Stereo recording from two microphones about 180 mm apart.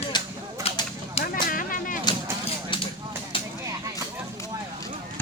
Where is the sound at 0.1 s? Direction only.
25° left (ahead or behind).